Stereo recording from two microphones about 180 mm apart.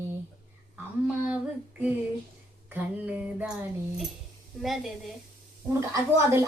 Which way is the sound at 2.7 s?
10° right (ahead or behind).